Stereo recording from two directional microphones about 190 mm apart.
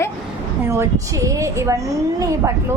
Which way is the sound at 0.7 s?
15° right (ahead or behind).